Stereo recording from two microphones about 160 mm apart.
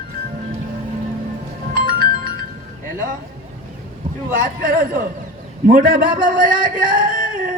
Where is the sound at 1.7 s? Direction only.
65° right (ahead or behind).